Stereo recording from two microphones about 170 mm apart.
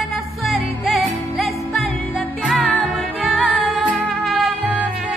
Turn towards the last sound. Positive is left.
turn(degrees=-5)  # may be behind; listen again after turning